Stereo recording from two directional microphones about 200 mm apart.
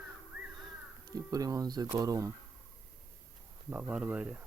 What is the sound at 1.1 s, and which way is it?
Speech, 20° right (ahead or behind).